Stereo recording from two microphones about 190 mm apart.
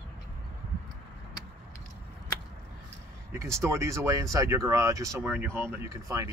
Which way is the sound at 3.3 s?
15° right (ahead or behind).